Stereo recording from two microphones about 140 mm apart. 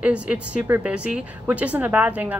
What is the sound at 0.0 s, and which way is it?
A woman's voice, 10° right (ahead or behind).